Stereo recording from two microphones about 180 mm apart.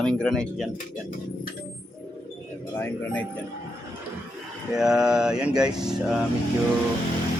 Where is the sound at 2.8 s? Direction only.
10° left (ahead or behind).